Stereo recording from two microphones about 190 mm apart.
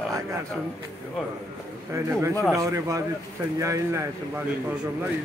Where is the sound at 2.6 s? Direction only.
15° right (ahead or behind).